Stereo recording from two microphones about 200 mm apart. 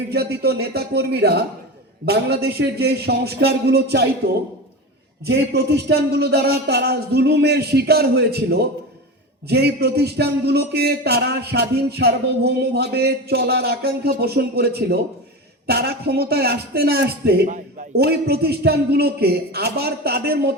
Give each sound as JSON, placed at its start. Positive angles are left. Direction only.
{"t": 0.1, "sound": "a man's voice", "side_deg": -55}
{"t": 5.3, "sound": "a man's voice", "side_deg": -55}